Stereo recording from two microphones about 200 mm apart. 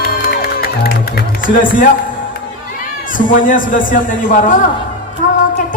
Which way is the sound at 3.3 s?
40° left (ahead or behind).